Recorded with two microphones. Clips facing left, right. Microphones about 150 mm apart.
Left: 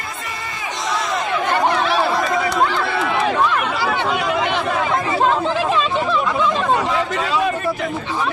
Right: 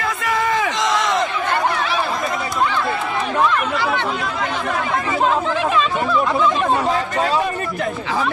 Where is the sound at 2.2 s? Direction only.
85° left.